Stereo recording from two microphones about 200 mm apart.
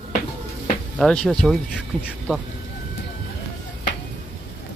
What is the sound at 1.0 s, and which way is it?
Speech, 5° left (ahead or behind).